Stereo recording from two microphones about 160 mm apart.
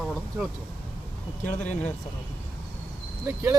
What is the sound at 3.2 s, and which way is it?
Speech, 15° right (ahead or behind).